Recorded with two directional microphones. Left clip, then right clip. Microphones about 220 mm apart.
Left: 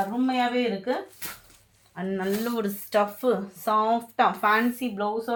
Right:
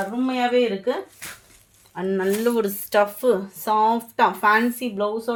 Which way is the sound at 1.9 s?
50° right (ahead or behind).